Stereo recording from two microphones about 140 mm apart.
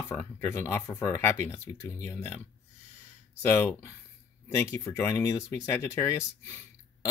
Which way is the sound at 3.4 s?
20° left (ahead or behind).